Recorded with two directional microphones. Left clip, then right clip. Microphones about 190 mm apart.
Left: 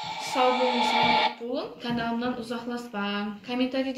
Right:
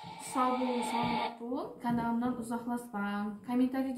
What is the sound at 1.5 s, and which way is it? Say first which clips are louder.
Speech: left 5 dB; 20° right (ahead or behind).